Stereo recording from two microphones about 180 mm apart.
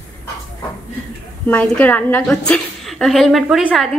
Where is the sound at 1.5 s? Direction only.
10° left (ahead or behind).